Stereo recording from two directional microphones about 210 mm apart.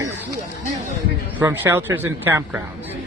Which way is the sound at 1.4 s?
10° right (ahead or behind).